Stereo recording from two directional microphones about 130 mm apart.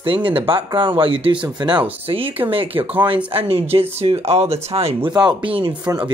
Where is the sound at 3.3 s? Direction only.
50° right (ahead or behind).